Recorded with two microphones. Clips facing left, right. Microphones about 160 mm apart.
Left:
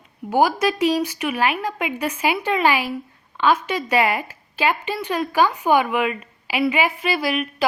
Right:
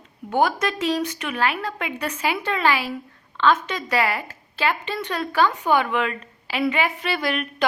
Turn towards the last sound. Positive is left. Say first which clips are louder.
# left 3 dB
turn(degrees=10)  # may be behind; listen again after turning